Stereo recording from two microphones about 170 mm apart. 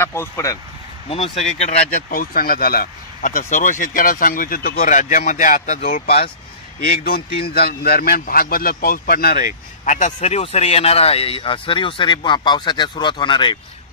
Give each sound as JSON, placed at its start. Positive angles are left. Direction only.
{"t": 0.0, "sound": "speech", "side_deg": 15}
{"t": 1.0, "sound": "speech", "side_deg": 35}
{"t": 6.8, "sound": "speech", "side_deg": 60}
{"t": 9.8, "sound": "speech", "side_deg": 45}